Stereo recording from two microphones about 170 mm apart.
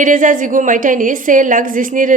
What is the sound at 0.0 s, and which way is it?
A woman's voice, 50° right (ahead or behind).